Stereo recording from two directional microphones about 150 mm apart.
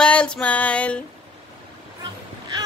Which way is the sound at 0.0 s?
5° left (ahead or behind).